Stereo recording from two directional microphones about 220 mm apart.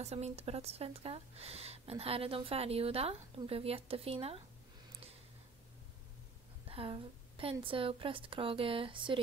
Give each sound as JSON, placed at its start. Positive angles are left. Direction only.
{"t": 0.0, "sound": "speech", "side_deg": -30}
{"t": 6.7, "sound": "speech", "side_deg": -25}